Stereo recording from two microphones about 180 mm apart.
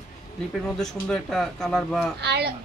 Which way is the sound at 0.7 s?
5° left (ahead or behind).